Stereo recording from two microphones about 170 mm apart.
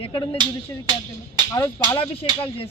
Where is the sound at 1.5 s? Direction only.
20° left (ahead or behind).